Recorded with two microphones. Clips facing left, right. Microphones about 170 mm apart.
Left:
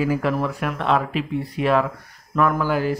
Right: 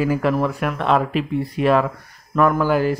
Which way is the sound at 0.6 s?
45° right (ahead or behind).